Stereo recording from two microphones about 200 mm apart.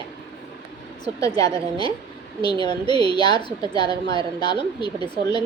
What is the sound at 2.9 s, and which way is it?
A woman's voice, 20° left (ahead or behind).